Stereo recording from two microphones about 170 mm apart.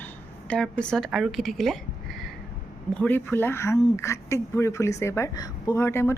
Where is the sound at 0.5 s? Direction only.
5° left (ahead or behind).